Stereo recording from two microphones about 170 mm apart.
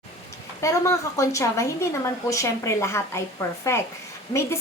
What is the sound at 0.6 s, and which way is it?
A woman's voice, 20° left (ahead or behind).